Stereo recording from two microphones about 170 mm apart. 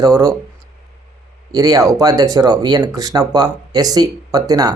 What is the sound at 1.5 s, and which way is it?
Speech, 20° right (ahead or behind).